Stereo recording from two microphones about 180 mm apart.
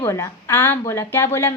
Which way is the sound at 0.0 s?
15° left (ahead or behind).